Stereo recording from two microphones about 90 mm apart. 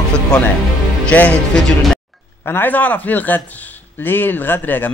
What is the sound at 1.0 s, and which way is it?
A man's voice, 15° left (ahead or behind).